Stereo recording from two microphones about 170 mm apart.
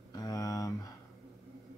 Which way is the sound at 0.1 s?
20° left (ahead or behind).